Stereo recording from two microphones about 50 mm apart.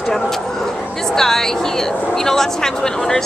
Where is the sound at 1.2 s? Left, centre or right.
Centre.